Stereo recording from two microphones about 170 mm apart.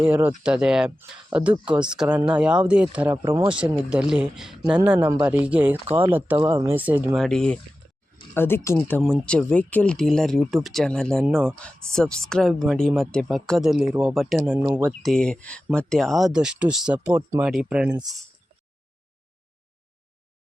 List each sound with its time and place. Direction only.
0.0 s speech: 10° right (ahead or behind)
7.2 s speech: 5° left (ahead or behind); by 14.9 s 15° right (ahead or behind)
15.0 s speech: 5° left (ahead or behind)